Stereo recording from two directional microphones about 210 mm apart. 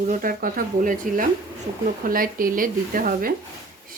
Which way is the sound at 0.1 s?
40° right (ahead or behind).